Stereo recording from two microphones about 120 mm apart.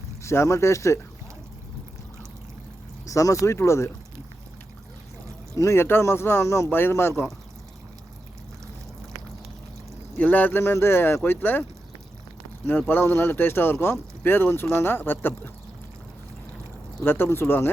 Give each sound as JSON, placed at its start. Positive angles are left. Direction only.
{"t": 0.2, "sound": "speech", "side_deg": 25}
{"t": 3.1, "sound": "speech", "side_deg": 25}
{"t": 5.5, "sound": "speech", "side_deg": 20}
{"t": 10.2, "sound": "speech", "side_deg": 15}
{"t": 12.9, "sound": "speech", "side_deg": 20}
{"t": 17.0, "sound": "speech", "side_deg": 20}